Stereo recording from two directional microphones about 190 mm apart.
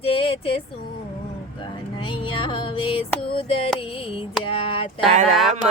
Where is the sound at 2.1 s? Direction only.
25° left (ahead or behind).